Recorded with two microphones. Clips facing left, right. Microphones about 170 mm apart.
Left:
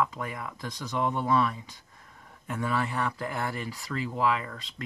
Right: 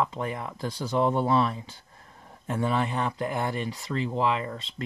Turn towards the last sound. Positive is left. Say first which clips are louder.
# right 3 dB
turn(degrees=-25)  # may be behind; listen again after turning